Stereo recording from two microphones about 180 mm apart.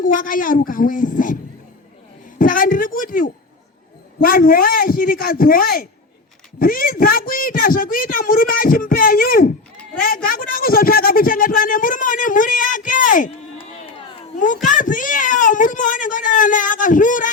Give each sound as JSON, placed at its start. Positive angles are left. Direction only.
{"t": 0.0, "sound": "speech", "side_deg": 50}
{"t": 2.4, "sound": "speech", "side_deg": 50}
{"t": 14.7, "sound": "speech", "side_deg": 45}